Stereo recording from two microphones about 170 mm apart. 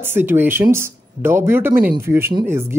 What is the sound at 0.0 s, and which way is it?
Speech, 15° right (ahead or behind).